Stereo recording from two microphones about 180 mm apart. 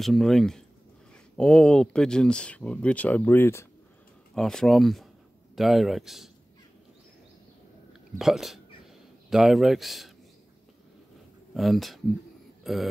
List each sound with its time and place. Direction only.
0.0 s speech: centre (ahead or behind)
4.4 s speech: 5° left (ahead or behind)
8.2 s speech: centre (ahead or behind)
11.5 s speech: centre (ahead or behind)